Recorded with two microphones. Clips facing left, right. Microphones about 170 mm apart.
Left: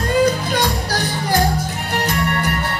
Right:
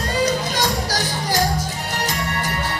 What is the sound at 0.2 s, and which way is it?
Music, 60° left (ahead or behind).